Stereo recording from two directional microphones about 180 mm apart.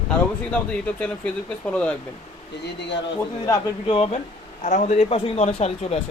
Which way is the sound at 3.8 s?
35° left (ahead or behind).